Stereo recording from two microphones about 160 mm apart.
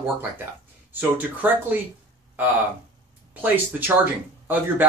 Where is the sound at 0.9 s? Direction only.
10° right (ahead or behind).